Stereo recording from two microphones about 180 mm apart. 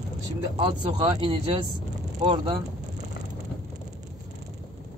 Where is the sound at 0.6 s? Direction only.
25° right (ahead or behind).